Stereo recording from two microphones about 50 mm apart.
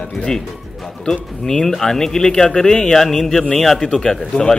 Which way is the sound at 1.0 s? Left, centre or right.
Centre.